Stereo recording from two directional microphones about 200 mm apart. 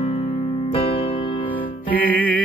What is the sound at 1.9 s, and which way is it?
Music, 10° left (ahead or behind).